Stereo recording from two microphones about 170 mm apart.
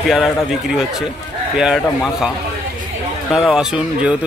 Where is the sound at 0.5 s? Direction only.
5° right (ahead or behind).